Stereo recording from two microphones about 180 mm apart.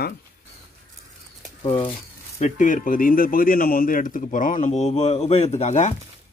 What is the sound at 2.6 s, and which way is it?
A man's voice, 45° left (ahead or behind).